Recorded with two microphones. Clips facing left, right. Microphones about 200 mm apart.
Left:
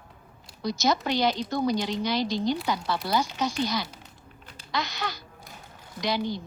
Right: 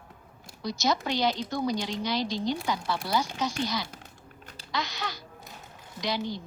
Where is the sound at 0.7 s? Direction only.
65° left (ahead or behind).